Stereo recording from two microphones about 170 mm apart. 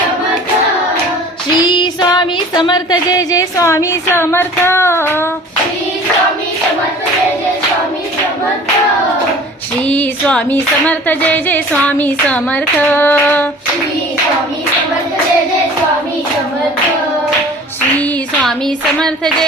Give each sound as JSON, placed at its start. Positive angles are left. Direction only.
{"t": 1.6, "sound": "female singing", "side_deg": 25}
{"t": 9.8, "sound": "a sound", "side_deg": 10}
{"t": 18.9, "sound": "music", "side_deg": 5}